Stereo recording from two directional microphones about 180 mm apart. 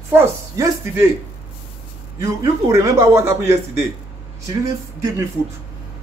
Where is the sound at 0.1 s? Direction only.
10° right (ahead or behind).